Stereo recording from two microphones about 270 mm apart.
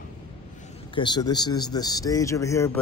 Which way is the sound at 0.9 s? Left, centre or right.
Centre.